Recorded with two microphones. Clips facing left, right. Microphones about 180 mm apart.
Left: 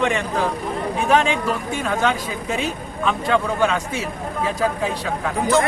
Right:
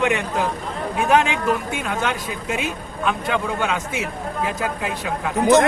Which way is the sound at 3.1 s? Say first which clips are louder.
Left 2 dB; centre (ahead or behind).